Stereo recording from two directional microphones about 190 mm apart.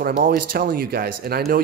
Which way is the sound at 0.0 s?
45° right (ahead or behind).